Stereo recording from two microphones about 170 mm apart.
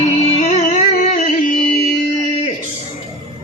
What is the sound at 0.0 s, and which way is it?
Music, 40° left (ahead or behind).